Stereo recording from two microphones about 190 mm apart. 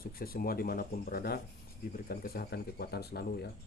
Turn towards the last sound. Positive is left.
turn(degrees=55)  # may be behind; listen again after turning